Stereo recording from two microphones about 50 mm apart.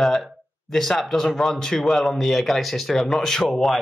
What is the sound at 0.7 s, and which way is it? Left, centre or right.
Speech, centre.